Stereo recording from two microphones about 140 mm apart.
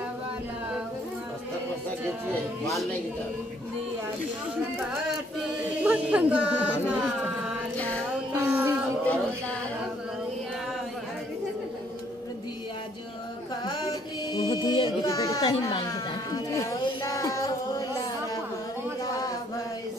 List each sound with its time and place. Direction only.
5.9 s speech: 10° right (ahead or behind)
7.7 s music: 10° left (ahead or behind)
8.3 s music: 20° right (ahead or behind)
9.0 s a sound: 10° left (ahead or behind)
14.3 s music: 30° left (ahead or behind)
15.0 s speech: 25° left (ahead or behind)
16.3 s a sound: 25° left (ahead or behind)